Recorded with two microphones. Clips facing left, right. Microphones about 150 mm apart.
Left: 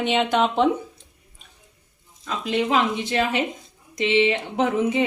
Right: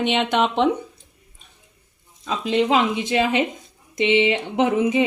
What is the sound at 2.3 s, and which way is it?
Speech, 25° right (ahead or behind).